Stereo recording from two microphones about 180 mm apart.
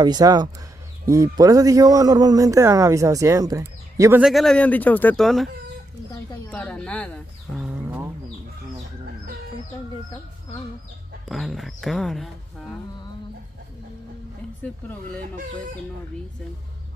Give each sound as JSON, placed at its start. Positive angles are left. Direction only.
{"t": 0.0, "sound": "a man's voice", "side_deg": -25}
{"t": 4.2, "sound": "speech", "side_deg": 0}
{"t": 6.1, "sound": "speech", "side_deg": 10}
{"t": 7.8, "sound": "a sound", "side_deg": -10}
{"t": 11.2, "sound": "speech", "side_deg": 0}
{"t": 14.6, "sound": "speech", "side_deg": 5}